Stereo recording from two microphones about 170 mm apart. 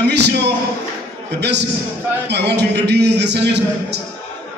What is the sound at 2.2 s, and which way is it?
A man's voice, 80° right.